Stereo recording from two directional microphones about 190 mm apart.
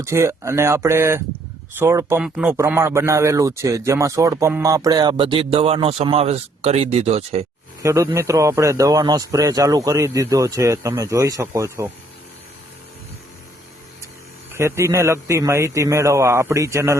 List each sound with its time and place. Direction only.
0.0 s a man's voice: 15° right (ahead or behind); by 7.4 s 35° right (ahead or behind)
7.8 s a man's voice: 15° right (ahead or behind)
14.5 s a man's voice: 15° right (ahead or behind)